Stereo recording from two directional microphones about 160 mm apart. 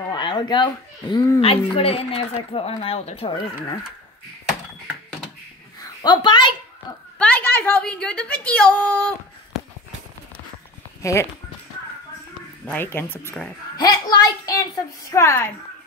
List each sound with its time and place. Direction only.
0.1 s a sound: 30° left (ahead or behind)
1.4 s a woman's voice: 35° left (ahead or behind)
5.8 s a sound: 30° left (ahead or behind)
7.2 s a woman's voice: 10° left (ahead or behind)
11.0 s speech: 20° left (ahead or behind)
12.6 s speech: 10° left (ahead or behind)
13.7 s a woman's voice: 25° left (ahead or behind)